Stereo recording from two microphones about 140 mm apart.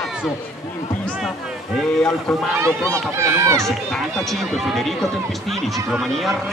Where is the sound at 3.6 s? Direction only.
Centre (ahead or behind).